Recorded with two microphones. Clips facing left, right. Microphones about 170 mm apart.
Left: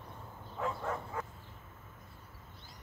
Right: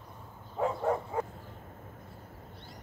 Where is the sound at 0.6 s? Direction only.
30° right (ahead or behind).